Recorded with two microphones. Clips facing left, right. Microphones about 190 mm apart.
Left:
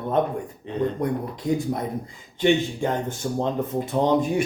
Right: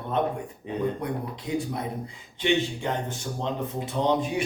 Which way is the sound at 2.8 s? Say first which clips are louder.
Left 5 dB; 50° left (ahead or behind).